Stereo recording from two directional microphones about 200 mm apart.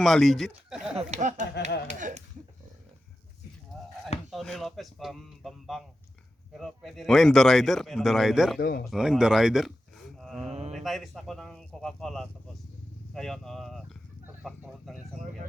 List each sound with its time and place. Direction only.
0.0 s speech: centre (ahead or behind)
0.9 s speech: 35° right (ahead or behind)
4.3 s speech: centre (ahead or behind)
8.5 s speech: 45° left (ahead or behind)
8.9 s speech: 5° right (ahead or behind)
10.5 s speech: 35° right (ahead or behind)
10.8 s speech: centre (ahead or behind)
14.9 s speech: 40° right (ahead or behind)